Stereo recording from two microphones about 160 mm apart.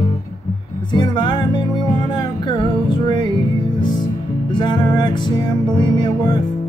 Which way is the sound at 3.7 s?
30° left (ahead or behind).